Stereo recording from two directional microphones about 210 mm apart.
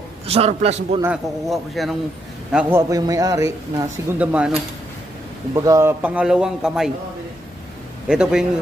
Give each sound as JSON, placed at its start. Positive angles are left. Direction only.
{"t": 0.3, "sound": "a man's voice", "side_deg": -30}
{"t": 1.0, "sound": "a man's voice", "side_deg": 0}
{"t": 2.5, "sound": "a man's voice", "side_deg": -15}
{"t": 8.1, "sound": "a man's voice", "side_deg": -5}